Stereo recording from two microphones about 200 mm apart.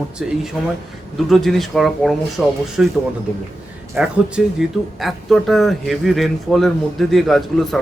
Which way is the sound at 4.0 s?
5° right (ahead or behind).